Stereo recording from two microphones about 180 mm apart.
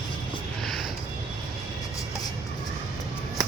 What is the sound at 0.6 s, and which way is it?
Music, centre (ahead or behind).